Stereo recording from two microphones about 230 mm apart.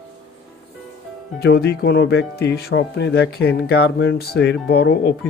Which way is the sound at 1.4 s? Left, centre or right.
Left.